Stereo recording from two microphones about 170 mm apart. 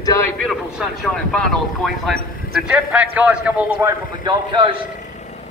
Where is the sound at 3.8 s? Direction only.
25° right (ahead or behind).